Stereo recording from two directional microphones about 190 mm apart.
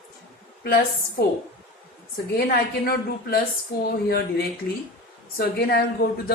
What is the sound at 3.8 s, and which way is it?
A woman's voice, 55° left (ahead or behind).